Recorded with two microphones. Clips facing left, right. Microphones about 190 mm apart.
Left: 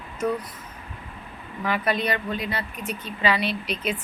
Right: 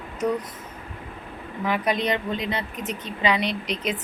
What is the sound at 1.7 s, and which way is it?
A woman's voice, 20° right (ahead or behind).